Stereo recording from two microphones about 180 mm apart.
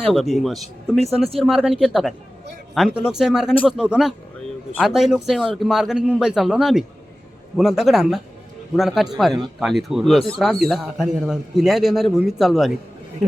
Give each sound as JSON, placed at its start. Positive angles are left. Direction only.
{"t": 0.1, "sound": "a man's voice", "side_deg": 0}
{"t": 0.9, "sound": "speech", "side_deg": -35}
{"t": 1.5, "sound": "a man's voice", "side_deg": -5}